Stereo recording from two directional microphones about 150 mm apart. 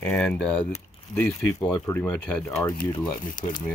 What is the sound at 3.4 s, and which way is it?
Speech, 60° left (ahead or behind).